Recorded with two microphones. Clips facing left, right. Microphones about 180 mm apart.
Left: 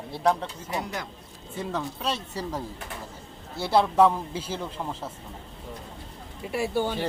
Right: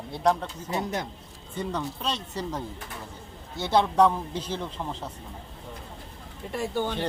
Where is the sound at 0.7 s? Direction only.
20° right (ahead or behind).